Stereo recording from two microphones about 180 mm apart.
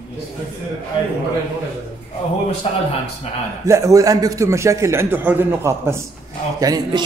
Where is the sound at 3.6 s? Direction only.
20° right (ahead or behind).